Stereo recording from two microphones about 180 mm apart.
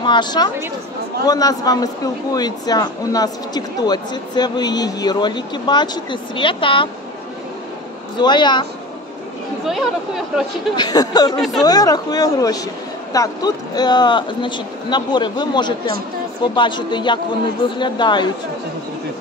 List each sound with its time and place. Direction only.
0.0 s speech: 25° left (ahead or behind)
8.2 s speech: 25° left (ahead or behind)
9.7 s speech: centre (ahead or behind)
10.8 s speech: 20° left (ahead or behind)